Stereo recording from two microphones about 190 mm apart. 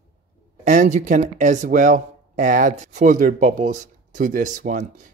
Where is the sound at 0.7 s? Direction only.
40° right (ahead or behind).